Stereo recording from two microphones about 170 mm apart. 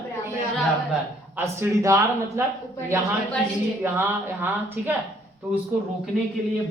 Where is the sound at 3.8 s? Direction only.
10° right (ahead or behind).